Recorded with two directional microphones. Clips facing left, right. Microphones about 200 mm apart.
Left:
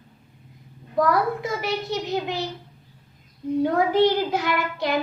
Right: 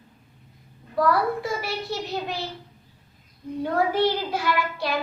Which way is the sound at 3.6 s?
15° left (ahead or behind).